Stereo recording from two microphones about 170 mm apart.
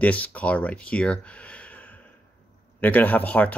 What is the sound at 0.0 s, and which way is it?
Speech, 10° left (ahead or behind).